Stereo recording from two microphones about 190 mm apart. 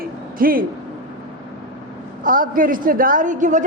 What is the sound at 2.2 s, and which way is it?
A woman's voice, 45° right (ahead or behind).